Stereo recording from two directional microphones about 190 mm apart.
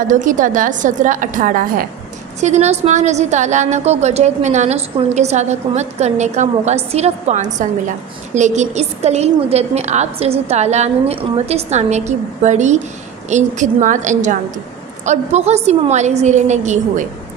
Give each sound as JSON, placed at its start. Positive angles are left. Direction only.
{"t": 0.0, "sound": "a woman's voice", "side_deg": -40}